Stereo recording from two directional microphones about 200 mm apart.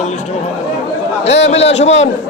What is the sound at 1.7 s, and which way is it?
Speech, 35° left (ahead or behind).